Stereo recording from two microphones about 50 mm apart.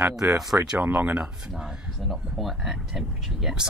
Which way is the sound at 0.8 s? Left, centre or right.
Right.